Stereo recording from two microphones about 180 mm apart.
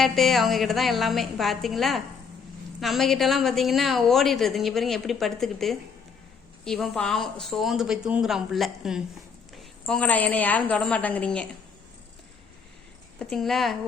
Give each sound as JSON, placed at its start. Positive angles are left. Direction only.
{"t": 0.0, "sound": "a woman's voice", "side_deg": 0}
{"t": 13.1, "sound": "a woman's voice", "side_deg": 0}